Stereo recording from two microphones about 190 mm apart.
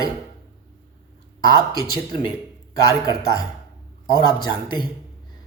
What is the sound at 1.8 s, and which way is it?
A woman's voice, 20° left (ahead or behind).